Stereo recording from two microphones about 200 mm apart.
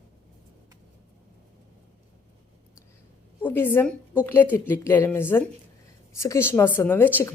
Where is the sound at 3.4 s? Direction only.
10° left (ahead or behind).